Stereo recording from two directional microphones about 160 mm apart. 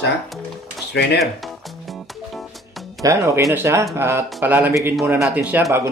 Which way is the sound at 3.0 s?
20° right (ahead or behind).